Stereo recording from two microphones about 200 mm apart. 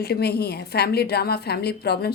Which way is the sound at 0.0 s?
55° left (ahead or behind).